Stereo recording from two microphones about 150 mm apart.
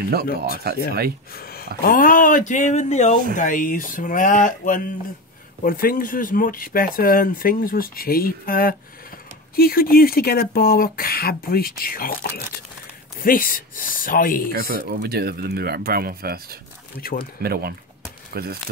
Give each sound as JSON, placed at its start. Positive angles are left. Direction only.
{"t": 0.4, "sound": "speech", "side_deg": -90}
{"t": 1.3, "sound": "a sound", "side_deg": 90}
{"t": 1.8, "sound": "speech", "side_deg": 70}
{"t": 3.3, "sound": "speech", "side_deg": 65}
{"t": 5.6, "sound": "speech", "side_deg": 70}
{"t": 14.5, "sound": "speech", "side_deg": -80}